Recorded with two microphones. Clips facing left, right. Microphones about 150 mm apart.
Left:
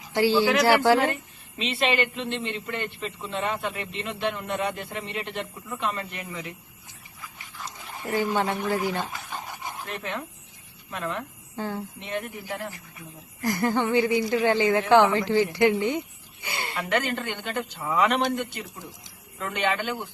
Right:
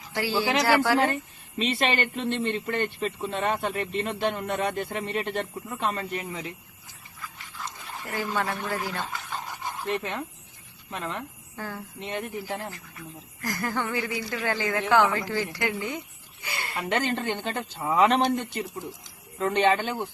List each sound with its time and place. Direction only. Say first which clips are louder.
0.1 s speech: left 7 dB; 25° left (ahead or behind)
0.3 s speech: left 1 dB; 25° right (ahead or behind)
0.6 s a woman's voice: left 3 dB; 25° left (ahead or behind)
1.5 s a man's voice: left 1 dB; 45° right (ahead or behind)
8.0 s a woman's voice: left 4 dB; 20° left (ahead or behind)
11.5 s speech: left 5 dB; 20° left (ahead or behind)
12.0 s speech: right 3 dB; 25° right (ahead or behind)
13.4 s a woman's voice: left 6 dB; 25° left (ahead or behind)
16.7 s speech: even; 25° right (ahead or behind)